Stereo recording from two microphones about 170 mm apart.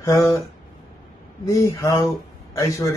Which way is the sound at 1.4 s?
20° left (ahead or behind).